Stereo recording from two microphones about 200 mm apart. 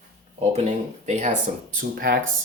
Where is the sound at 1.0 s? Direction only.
35° right (ahead or behind).